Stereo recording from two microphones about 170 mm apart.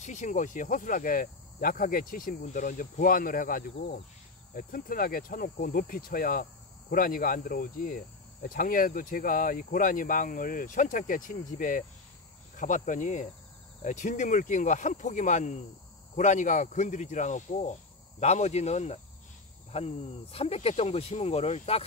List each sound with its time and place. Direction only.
0.0 s speech: 45° left (ahead or behind)